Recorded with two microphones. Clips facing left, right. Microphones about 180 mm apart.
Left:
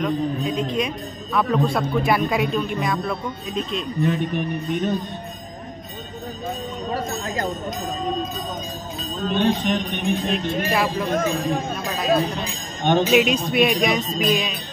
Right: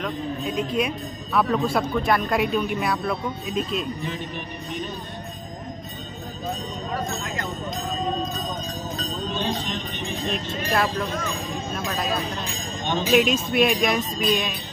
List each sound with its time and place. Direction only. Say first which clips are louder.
0.0 s a man's voice: left 5 dB; 5° right (ahead or behind)
4.0 s speech: left 9 dB; 55° left (ahead or behind)
9.3 s speech: left 10 dB; 60° left (ahead or behind)
10.7 s a man's voice: right 1 dB; 5° left (ahead or behind)
11.1 s speech: left 8 dB; 55° left (ahead or behind)
11.7 s a man's voice: left 3 dB; centre (ahead or behind)